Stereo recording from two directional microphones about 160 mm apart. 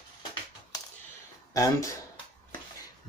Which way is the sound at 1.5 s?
20° left (ahead or behind).